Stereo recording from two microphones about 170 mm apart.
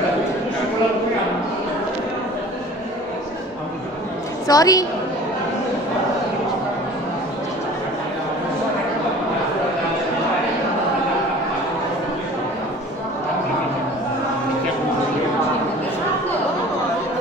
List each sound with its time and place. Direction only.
4.5 s a woman's voice: 20° left (ahead or behind)